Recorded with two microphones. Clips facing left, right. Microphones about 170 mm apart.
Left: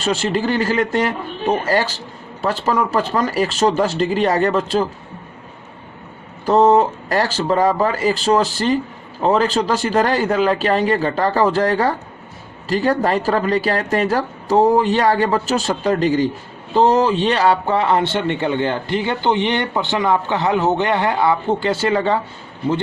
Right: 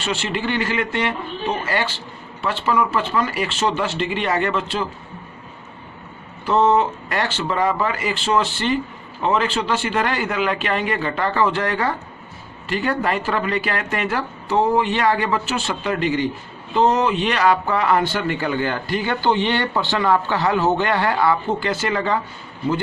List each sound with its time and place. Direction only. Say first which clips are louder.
0.0 s speech: left 5 dB; 40° left (ahead or behind)
6.4 s speech: left 4 dB; 40° left (ahead or behind)